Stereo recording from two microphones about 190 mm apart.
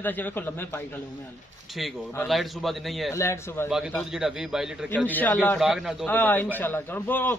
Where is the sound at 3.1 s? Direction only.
15° left (ahead or behind).